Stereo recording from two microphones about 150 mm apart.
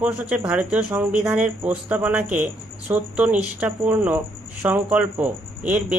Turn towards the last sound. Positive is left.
turn(degrees=-10)  # may be behind; listen again after turning